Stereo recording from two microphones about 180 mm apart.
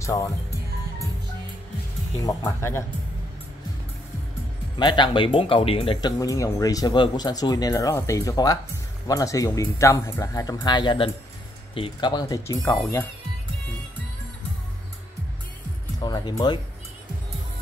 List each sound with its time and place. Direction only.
0.0 s speech: 15° left (ahead or behind)
2.2 s speech: 15° left (ahead or behind)
4.7 s speech: 25° left (ahead or behind)
16.0 s speech: 25° left (ahead or behind)